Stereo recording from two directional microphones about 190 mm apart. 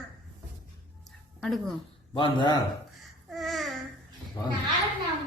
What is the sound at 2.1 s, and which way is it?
Speech, 25° left (ahead or behind).